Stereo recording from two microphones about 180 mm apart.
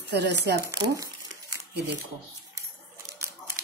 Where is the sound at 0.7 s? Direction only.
20° right (ahead or behind).